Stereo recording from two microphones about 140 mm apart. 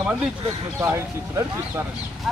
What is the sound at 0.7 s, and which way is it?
Speech, 15° right (ahead or behind).